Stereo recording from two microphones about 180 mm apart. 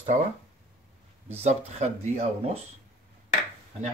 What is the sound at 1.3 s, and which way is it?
Speech, 40° right (ahead or behind).